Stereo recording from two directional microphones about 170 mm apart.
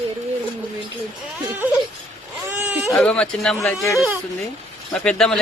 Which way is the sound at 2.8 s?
5° left (ahead or behind).